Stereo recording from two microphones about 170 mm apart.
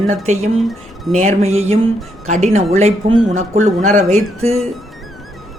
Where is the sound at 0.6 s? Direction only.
Centre (ahead or behind).